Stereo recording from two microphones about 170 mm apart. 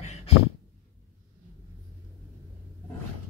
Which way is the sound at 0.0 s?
40° left (ahead or behind).